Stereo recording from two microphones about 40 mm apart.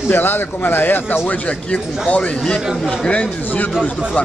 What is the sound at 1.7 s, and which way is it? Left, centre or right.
Speech, left.